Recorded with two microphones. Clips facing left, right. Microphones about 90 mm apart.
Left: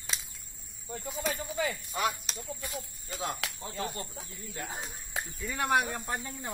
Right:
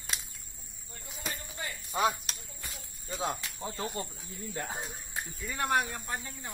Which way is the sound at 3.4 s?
90° left.